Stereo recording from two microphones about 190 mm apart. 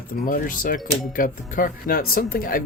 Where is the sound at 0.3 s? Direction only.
45° left (ahead or behind).